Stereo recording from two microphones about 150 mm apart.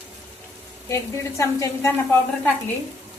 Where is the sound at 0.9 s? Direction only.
20° left (ahead or behind).